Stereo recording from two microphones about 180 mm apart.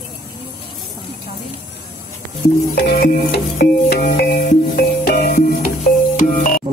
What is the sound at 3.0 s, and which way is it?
Music, 55° left (ahead or behind).